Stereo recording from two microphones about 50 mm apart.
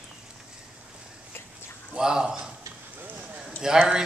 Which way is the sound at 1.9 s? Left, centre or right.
Centre.